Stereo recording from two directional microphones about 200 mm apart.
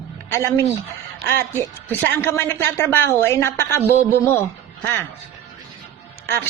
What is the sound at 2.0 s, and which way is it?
A woman's voice, 10° left (ahead or behind).